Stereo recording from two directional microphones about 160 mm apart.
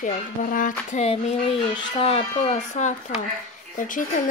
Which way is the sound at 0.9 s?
45° left (ahead or behind).